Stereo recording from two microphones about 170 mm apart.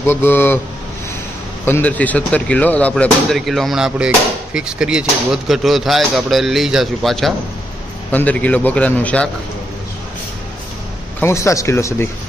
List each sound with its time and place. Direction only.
0.0 s speech: 15° left (ahead or behind)
1.7 s speech: 10° left (ahead or behind)
11.1 s speech: 15° left (ahead or behind)